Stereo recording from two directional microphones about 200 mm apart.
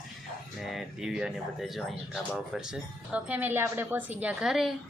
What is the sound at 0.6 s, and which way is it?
Speech, centre (ahead or behind).